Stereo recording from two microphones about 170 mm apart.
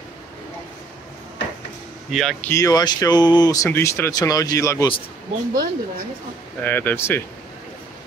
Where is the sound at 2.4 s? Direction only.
20° left (ahead or behind).